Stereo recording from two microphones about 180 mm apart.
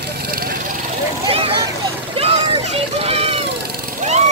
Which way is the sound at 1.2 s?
30° right (ahead or behind).